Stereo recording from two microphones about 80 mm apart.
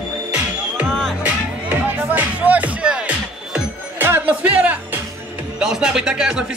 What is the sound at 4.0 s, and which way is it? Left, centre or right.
Music, right.